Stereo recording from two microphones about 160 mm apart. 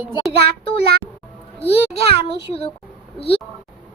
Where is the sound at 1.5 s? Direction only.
35° left (ahead or behind).